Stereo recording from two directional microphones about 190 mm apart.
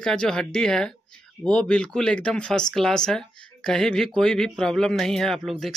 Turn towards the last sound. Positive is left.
turn(degrees=0)  # may be behind; listen again after turning